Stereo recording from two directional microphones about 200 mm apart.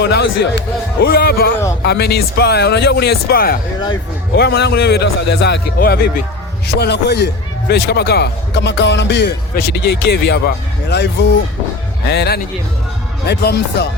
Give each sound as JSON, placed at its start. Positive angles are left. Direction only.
{"t": 0.0, "sound": "a man's voice", "side_deg": 55}